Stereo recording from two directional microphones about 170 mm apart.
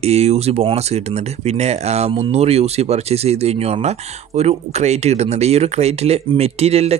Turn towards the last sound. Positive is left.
turn(degrees=-35)  # may be behind; listen again after turning